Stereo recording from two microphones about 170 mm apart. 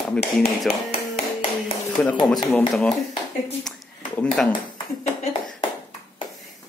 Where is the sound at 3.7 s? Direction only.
5° left (ahead or behind).